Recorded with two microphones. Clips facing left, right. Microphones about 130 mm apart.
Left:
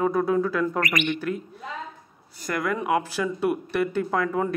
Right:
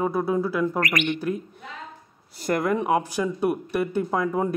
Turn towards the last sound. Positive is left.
turn(degrees=-20)  # may be behind; listen again after turning